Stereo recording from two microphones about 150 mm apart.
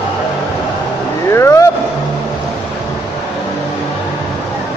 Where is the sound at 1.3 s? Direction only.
20° left (ahead or behind).